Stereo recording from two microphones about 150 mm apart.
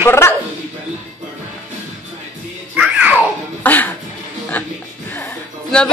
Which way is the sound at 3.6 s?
10° left (ahead or behind).